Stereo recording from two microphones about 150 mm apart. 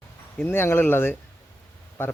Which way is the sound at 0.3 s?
15° left (ahead or behind).